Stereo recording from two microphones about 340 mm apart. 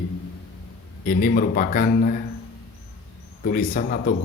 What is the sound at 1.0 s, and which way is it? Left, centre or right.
A man's voice, left.